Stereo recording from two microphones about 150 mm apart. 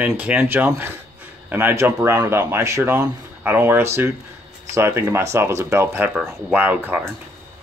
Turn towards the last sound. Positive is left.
turn(degrees=-10)  # may be behind; listen again after turning